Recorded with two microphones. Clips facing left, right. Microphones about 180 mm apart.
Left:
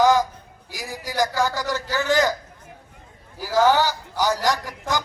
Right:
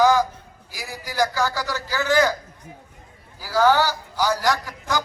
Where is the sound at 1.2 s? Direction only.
20° left (ahead or behind).